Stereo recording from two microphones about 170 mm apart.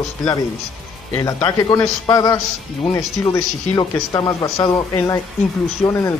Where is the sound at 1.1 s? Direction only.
15° left (ahead or behind).